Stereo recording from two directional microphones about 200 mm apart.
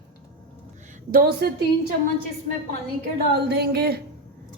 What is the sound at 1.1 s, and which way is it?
Speech, 50° right (ahead or behind).